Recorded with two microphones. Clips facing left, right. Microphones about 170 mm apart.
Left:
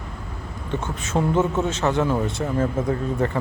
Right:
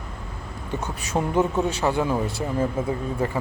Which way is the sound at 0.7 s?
10° right (ahead or behind).